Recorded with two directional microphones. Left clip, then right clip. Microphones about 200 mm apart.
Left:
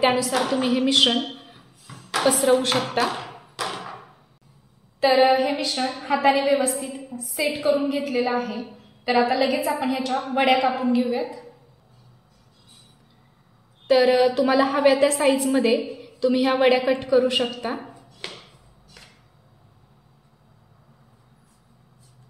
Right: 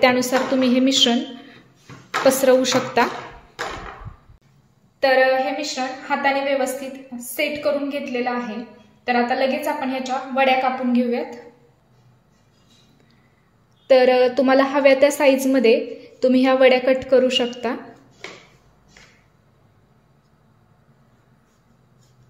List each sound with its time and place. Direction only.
0.0 s a woman's voice: 35° right (ahead or behind)
5.0 s a woman's voice: 35° right (ahead or behind)
13.8 s a woman's voice: 30° right (ahead or behind)